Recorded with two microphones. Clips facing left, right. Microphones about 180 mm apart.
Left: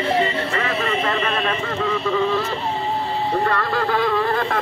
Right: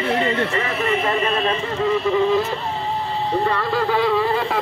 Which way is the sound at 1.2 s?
35° right (ahead or behind).